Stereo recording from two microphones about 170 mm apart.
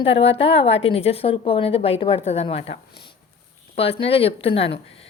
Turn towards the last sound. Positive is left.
turn(degrees=35)  # may be behind; listen again after turning